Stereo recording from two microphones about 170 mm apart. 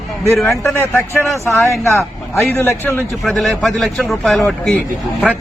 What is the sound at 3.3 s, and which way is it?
A man's voice, centre (ahead or behind).